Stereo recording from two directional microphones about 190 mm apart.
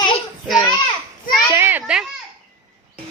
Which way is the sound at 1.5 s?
10° right (ahead or behind).